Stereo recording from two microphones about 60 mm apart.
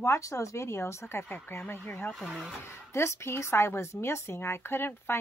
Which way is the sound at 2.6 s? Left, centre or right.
Left.